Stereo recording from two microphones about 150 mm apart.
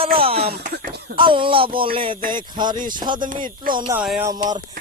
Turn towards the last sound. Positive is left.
turn(degrees=-25)  # may be behind; listen again after turning